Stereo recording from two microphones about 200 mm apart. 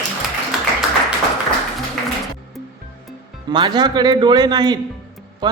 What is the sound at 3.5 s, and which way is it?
A man's voice, 20° right (ahead or behind).